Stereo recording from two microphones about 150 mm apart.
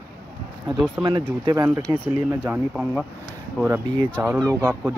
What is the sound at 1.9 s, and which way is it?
Speech, 20° right (ahead or behind).